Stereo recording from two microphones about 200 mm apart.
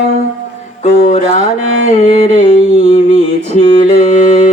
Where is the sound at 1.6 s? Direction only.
80° right.